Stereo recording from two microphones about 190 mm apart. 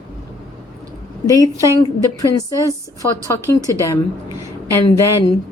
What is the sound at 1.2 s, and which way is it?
A woman's voice, 20° left (ahead or behind).